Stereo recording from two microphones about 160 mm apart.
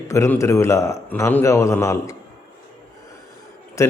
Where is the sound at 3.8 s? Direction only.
20° left (ahead or behind).